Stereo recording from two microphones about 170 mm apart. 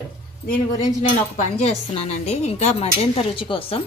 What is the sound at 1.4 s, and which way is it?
A woman's voice, 40° left (ahead or behind).